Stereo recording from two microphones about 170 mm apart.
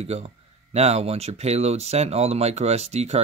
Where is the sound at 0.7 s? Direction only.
40° right (ahead or behind).